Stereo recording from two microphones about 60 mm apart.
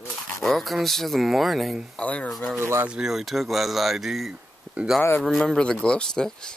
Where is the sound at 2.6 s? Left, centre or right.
Right.